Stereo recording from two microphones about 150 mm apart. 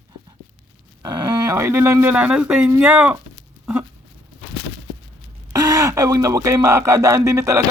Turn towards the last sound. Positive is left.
turn(degrees=-20)  # may be behind; listen again after turning